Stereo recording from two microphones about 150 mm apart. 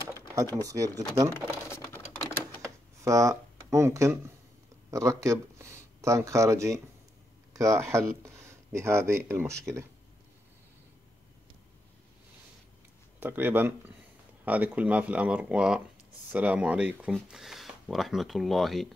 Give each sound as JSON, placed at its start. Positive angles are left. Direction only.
{"t": 0.6, "sound": "speech", "side_deg": -20}
{"t": 1.7, "sound": "typing", "side_deg": 15}
{"t": 2.6, "sound": "computer keyboard", "side_deg": -20}
{"t": 4.9, "sound": "speech", "side_deg": -20}
{"t": 13.2, "sound": "speech", "side_deg": -15}